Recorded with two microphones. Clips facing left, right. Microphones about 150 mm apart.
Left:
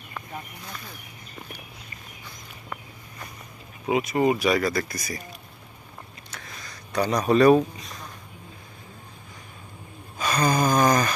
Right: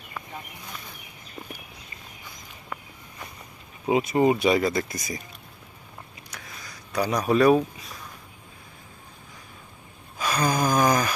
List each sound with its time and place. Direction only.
3.8 s speech: 30° right (ahead or behind)
6.3 s speech: 10° right (ahead or behind)
10.2 s a sound: 5° right (ahead or behind)